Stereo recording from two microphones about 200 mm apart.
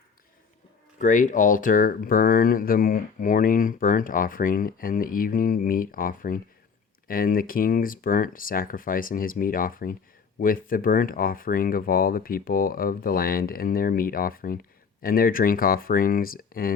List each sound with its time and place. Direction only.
0.9 s speech: 40° left (ahead or behind)